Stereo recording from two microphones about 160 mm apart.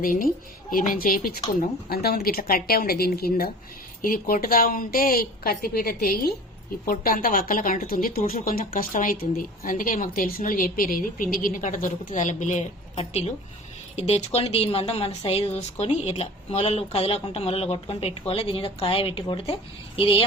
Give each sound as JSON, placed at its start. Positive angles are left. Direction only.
{"t": 0.0, "sound": "speech", "side_deg": 60}
{"t": 1.9, "sound": "a woman's voice", "side_deg": 75}
{"t": 4.0, "sound": "a woman's voice", "side_deg": 60}